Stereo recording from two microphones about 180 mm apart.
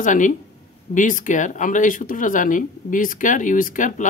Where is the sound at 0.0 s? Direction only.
45° left (ahead or behind).